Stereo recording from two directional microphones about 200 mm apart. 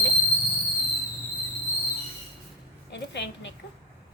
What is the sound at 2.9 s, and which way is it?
Speech, 60° left (ahead or behind).